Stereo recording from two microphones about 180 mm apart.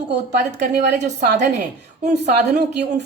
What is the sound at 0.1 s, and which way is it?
A woman's voice, 75° right (ahead or behind).